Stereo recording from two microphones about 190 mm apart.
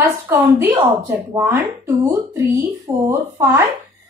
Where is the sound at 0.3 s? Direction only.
10° right (ahead or behind).